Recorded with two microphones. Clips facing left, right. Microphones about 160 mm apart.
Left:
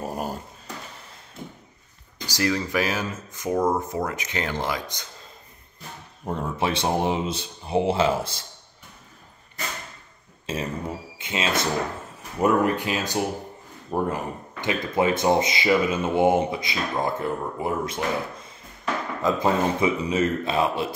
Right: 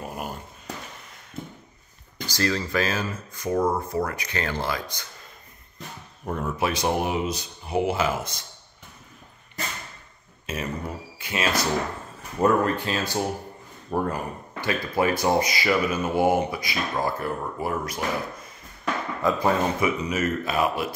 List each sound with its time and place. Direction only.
0.0 s dog: 40° left (ahead or behind)
2.2 s speech: 15° left (ahead or behind)
6.2 s speech: 25° left (ahead or behind)
10.4 s speech: 30° left (ahead or behind)